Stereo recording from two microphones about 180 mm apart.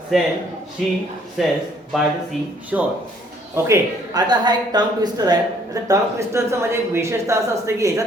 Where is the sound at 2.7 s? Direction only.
5° right (ahead or behind).